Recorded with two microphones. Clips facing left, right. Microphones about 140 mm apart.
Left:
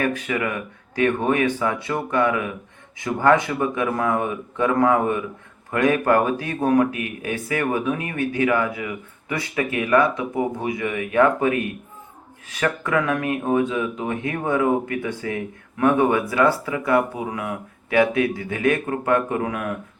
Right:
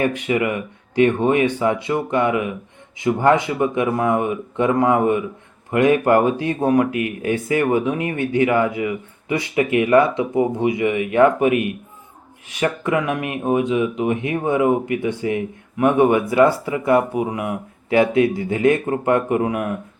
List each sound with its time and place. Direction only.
0.0 s speech: 25° right (ahead or behind)